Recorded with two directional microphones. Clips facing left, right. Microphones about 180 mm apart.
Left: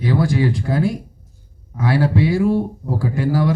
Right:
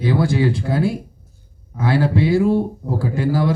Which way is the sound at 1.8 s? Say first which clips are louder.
Even; 25° right (ahead or behind).